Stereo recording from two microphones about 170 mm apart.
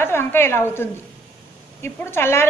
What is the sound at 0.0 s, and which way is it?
A woman's voice, 15° left (ahead or behind).